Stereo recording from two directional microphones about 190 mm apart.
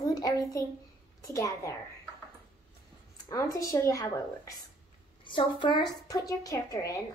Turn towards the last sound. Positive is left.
turn(degrees=15)  # may be behind; listen again after turning